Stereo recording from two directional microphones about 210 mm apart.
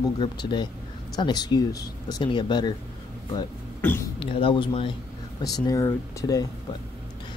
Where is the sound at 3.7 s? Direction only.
10° left (ahead or behind).